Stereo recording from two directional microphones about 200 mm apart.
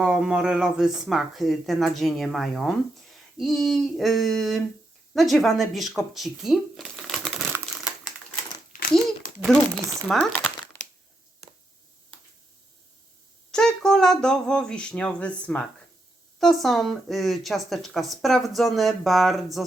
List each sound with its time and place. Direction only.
0.0 s speech: 5° right (ahead or behind)
8.7 s a sound: 45° left (ahead or behind)
10.1 s crumpling: 5° left (ahead or behind)
13.5 s speech: 5° left (ahead or behind)